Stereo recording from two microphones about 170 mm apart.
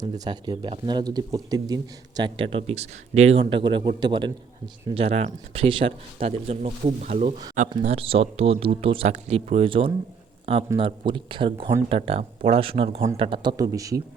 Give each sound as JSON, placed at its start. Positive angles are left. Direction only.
{"t": 0.0, "sound": "speech", "side_deg": -25}